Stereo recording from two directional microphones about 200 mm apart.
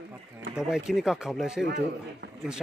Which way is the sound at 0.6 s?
5° right (ahead or behind).